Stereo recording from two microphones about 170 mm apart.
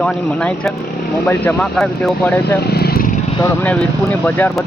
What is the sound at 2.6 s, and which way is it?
Vehicle, 70° left (ahead or behind).